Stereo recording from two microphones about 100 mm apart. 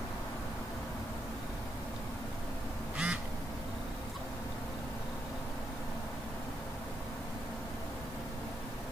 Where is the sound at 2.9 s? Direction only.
10° right (ahead or behind).